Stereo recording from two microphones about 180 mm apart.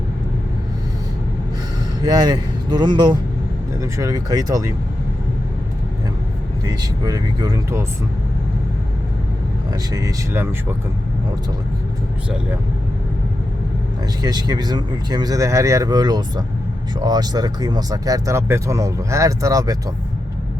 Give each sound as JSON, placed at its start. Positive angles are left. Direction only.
{"t": 2.0, "sound": "speech", "side_deg": -20}
{"t": 6.7, "sound": "speech", "side_deg": -20}
{"t": 9.9, "sound": "speech", "side_deg": -15}
{"t": 14.2, "sound": "speech", "side_deg": -20}